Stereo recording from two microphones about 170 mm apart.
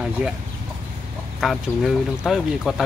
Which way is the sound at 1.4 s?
Centre (ahead or behind).